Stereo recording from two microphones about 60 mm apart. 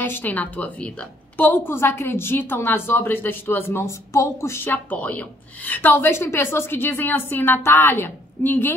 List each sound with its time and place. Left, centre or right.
0.0 s a woman's voice: left
1.7 s a woman's voice: left
4.6 s a woman's voice: left
5.7 s a woman's voice: left